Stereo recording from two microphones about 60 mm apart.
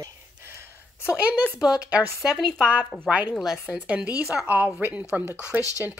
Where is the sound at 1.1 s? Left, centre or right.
Right.